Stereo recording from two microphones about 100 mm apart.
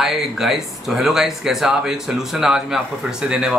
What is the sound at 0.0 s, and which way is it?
Speech, centre (ahead or behind).